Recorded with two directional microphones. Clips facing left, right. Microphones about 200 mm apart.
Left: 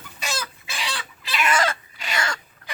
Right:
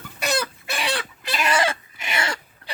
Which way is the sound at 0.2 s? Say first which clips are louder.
Right 7 dB; 60° right (ahead or behind).